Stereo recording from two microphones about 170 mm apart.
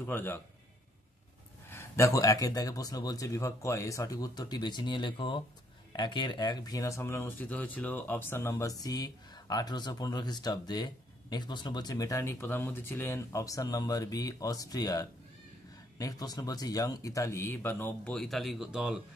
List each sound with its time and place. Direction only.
0.0 s speech: 15° left (ahead or behind)
1.7 s speech: 15° left (ahead or behind); by 18.9 s 5° right (ahead or behind)